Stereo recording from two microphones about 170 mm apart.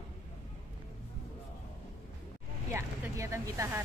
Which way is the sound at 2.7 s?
15° right (ahead or behind).